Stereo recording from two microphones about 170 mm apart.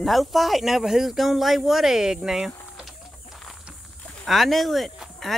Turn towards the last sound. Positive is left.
turn(degrees=0)  # may be behind; listen again after turning